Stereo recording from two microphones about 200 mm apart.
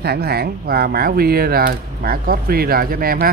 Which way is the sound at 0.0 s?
50° right (ahead or behind).